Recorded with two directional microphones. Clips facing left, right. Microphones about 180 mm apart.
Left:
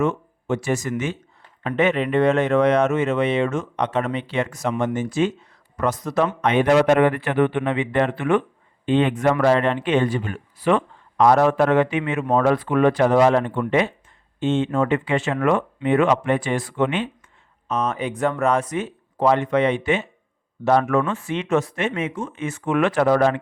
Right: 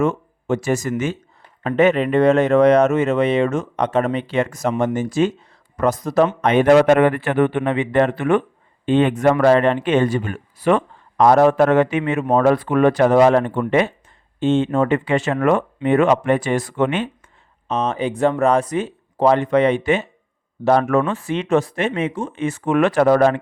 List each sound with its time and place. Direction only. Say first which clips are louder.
0.0 s speech: right 2 dB; 40° right (ahead or behind)
14.3 s speech: right 3 dB; 35° right (ahead or behind)
17.7 s speech: right 3 dB; 25° right (ahead or behind); by 23.4 s 45° right (ahead or behind)